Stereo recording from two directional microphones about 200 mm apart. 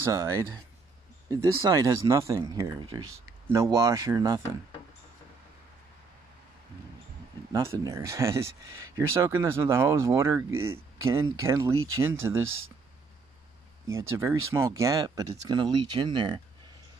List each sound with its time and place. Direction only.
0.0 s speech: 15° right (ahead or behind)
7.5 s speech: 15° right (ahead or behind)
12.4 s speech: 90° right
13.9 s speech: 15° right (ahead or behind)